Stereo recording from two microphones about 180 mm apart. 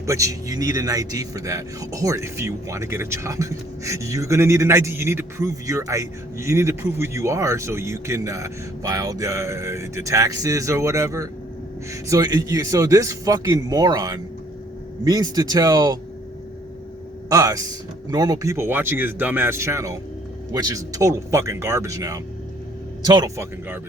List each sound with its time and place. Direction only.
0.0 s speech: 15° right (ahead or behind)
17.2 s speech: 20° right (ahead or behind)